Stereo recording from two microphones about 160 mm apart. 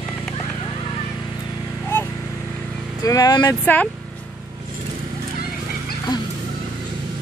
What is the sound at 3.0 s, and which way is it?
Vehicle, 25° left (ahead or behind).